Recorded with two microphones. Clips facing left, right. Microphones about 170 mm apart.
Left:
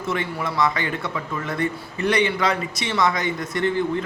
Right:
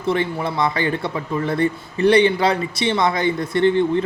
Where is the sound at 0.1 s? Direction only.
30° right (ahead or behind).